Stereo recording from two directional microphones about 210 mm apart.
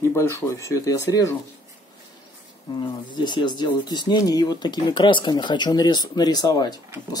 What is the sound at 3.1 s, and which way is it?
Speech, 20° left (ahead or behind).